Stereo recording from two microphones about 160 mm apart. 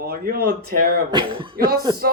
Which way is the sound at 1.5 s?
70° right (ahead or behind).